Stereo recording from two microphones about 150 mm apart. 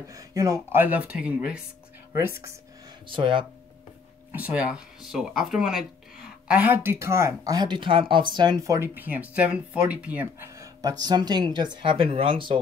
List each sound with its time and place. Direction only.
0.1 s speech: 20° right (ahead or behind)
3.1 s speech: 35° right (ahead or behind)
4.3 s speech: 10° right (ahead or behind); by 8.7 s 30° right (ahead or behind)
8.7 s speech: 15° right (ahead or behind)
10.6 s speech: 25° right (ahead or behind)